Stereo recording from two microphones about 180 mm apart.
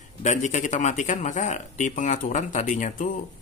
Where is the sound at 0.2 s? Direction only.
40° left (ahead or behind).